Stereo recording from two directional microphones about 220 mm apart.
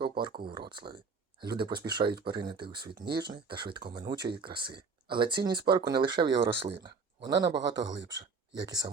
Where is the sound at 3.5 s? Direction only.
20° right (ahead or behind).